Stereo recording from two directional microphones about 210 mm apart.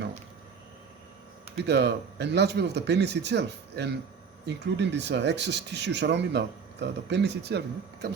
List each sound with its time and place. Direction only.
1.5 s speech: 55° right (ahead or behind)